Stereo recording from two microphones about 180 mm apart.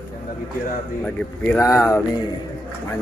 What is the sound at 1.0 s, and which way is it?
Speech, 10° left (ahead or behind).